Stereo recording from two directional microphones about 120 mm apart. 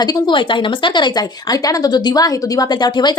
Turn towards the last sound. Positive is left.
turn(degrees=35)  # may be behind; listen again after turning